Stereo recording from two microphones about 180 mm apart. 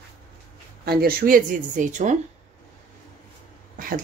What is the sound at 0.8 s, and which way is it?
Speech, 60° right (ahead or behind).